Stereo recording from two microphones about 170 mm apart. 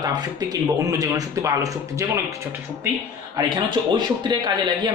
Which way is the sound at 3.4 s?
25° right (ahead or behind).